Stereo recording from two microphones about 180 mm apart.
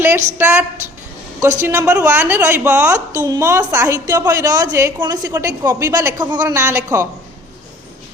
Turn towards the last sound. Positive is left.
turn(degrees=-15)  # may be behind; listen again after turning